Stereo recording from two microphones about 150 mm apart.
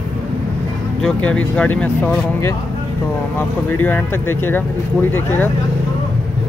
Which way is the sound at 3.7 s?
15° left (ahead or behind).